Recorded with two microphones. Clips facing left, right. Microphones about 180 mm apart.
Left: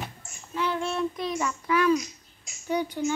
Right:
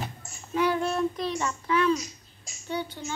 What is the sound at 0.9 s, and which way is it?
Child singing, 30° right (ahead or behind).